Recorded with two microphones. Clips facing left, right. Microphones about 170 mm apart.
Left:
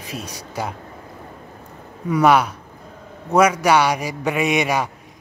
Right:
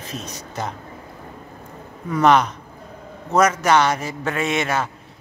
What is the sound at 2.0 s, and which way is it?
A man's voice, 10° left (ahead or behind).